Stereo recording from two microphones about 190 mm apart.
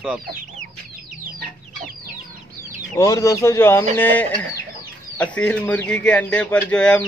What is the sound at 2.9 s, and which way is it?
Speech, 15° left (ahead or behind).